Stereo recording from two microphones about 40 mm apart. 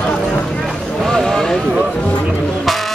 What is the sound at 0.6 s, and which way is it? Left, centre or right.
Vehicle, centre.